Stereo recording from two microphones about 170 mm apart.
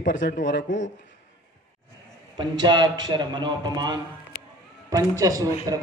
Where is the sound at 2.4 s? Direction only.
25° right (ahead or behind).